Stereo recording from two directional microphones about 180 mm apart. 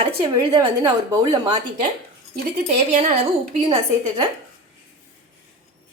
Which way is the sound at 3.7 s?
25° right (ahead or behind).